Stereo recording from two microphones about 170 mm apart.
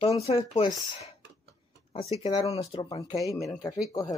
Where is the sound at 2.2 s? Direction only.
35° left (ahead or behind).